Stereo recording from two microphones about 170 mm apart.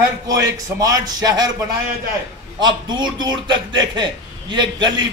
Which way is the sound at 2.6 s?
25° right (ahead or behind).